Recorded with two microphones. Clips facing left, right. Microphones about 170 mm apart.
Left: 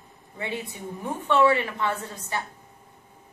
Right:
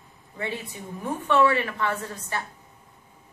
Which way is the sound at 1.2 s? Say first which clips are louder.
Left 1 dB; 20° left (ahead or behind).